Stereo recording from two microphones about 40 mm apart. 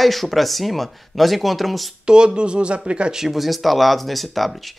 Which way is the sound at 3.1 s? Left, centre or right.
Centre.